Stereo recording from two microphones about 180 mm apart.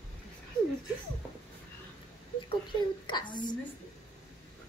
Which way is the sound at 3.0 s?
25° left (ahead or behind).